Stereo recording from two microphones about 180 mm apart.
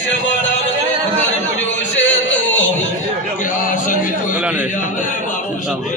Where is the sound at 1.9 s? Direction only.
90° left.